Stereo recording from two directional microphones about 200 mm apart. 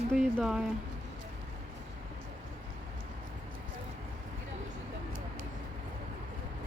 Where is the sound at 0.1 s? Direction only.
Centre (ahead or behind).